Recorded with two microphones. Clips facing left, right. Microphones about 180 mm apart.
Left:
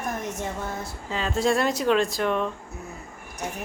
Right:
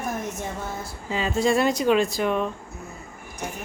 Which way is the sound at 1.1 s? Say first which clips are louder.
Right 2 dB; 5° right (ahead or behind).